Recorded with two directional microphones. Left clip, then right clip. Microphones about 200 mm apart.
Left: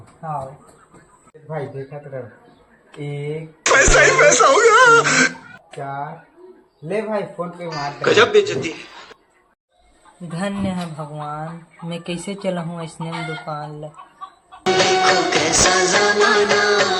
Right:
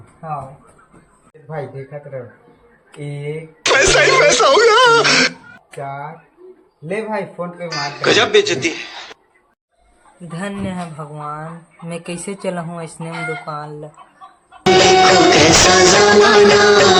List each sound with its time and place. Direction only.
2.9 s speech: centre (ahead or behind)
3.6 s speech: 55° right (ahead or behind)
5.5 s a sound: 5° left (ahead or behind)
6.8 s speech: 10° left (ahead or behind)
7.7 s speech: 55° right (ahead or behind)
10.3 s speech: centre (ahead or behind)
14.6 s music: 50° right (ahead or behind)